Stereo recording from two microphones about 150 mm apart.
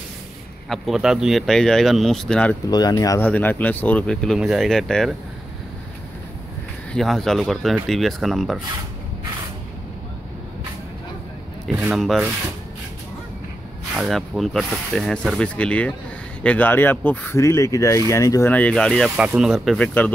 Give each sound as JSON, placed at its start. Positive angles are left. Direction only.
{"t": 0.7, "sound": "speech", "side_deg": 0}
{"t": 2.7, "sound": "speech", "side_deg": 25}
{"t": 3.3, "sound": "speech", "side_deg": 10}
{"t": 6.9, "sound": "speech", "side_deg": 0}
{"t": 11.8, "sound": "speech", "side_deg": 0}
{"t": 13.9, "sound": "speech", "side_deg": 0}
{"t": 18.5, "sound": "speech", "side_deg": 10}
{"t": 19.8, "sound": "speech", "side_deg": 10}